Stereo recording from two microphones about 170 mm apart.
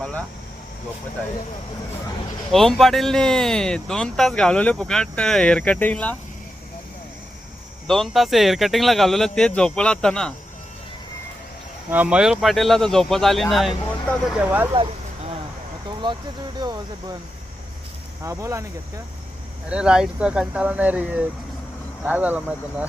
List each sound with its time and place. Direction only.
0.0 s vehicle: 5° left (ahead or behind)
2.5 s speech: centre (ahead or behind)
7.9 s speech: centre (ahead or behind)
11.9 s speech: 10° right (ahead or behind)
14.7 s vehicle: 35° right (ahead or behind)
16.6 s speech: 25° right (ahead or behind)
18.2 s speech: 20° right (ahead or behind)
19.6 s speech: 5° right (ahead or behind)